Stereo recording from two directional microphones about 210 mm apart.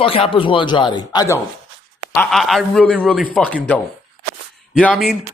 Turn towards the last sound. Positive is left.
turn(degrees=5)  # may be behind; listen again after turning